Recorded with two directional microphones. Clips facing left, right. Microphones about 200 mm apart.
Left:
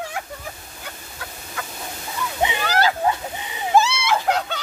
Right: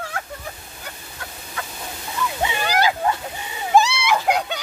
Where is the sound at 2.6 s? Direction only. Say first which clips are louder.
Right 1 dB; 15° right (ahead or behind).